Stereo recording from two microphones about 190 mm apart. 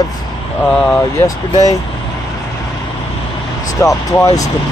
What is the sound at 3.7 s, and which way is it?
Speech, 15° left (ahead or behind).